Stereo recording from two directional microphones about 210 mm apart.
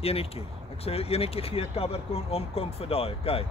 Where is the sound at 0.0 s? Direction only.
30° left (ahead or behind).